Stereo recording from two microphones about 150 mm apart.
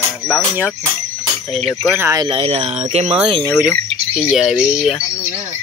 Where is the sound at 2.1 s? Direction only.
35° right (ahead or behind).